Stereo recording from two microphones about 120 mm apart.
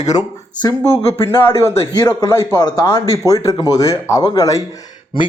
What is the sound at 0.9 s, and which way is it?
Speech, 55° left (ahead or behind).